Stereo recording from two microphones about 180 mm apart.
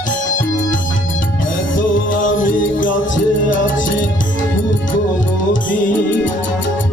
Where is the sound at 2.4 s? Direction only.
50° left (ahead or behind).